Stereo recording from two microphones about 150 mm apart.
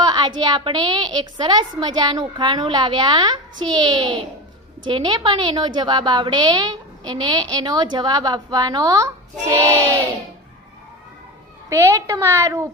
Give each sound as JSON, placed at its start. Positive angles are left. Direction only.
{"t": 0.0, "sound": "a woman's voice", "side_deg": -30}
{"t": 11.7, "sound": "a woman's voice", "side_deg": -15}